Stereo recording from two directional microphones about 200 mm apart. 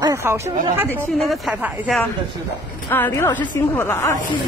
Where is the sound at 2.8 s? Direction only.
10° left (ahead or behind).